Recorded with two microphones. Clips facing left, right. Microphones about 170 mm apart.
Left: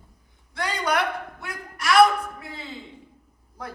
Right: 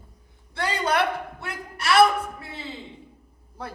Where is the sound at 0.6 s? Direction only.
30° right (ahead or behind).